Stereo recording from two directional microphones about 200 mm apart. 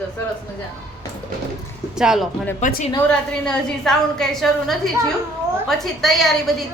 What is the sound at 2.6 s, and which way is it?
Speech, 40° left (ahead or behind).